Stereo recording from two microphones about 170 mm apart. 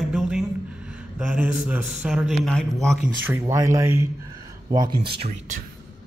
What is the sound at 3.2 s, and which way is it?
Speech, 20° right (ahead or behind).